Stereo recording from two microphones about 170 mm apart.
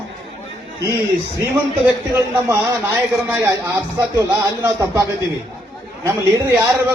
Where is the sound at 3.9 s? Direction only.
20° right (ahead or behind).